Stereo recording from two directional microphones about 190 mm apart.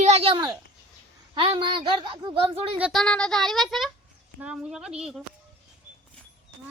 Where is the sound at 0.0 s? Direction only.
35° right (ahead or behind).